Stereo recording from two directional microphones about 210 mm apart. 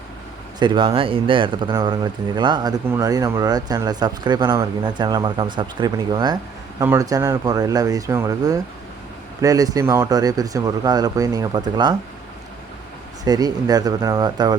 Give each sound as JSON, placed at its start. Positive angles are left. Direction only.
{"t": 0.6, "sound": "speech", "side_deg": -20}
{"t": 13.2, "sound": "speech", "side_deg": -20}